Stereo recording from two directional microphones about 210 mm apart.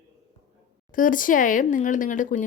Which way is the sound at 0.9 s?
40° left (ahead or behind).